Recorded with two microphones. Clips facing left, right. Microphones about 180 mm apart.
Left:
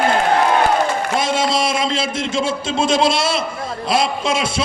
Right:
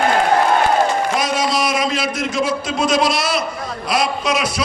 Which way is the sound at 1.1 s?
25° left (ahead or behind).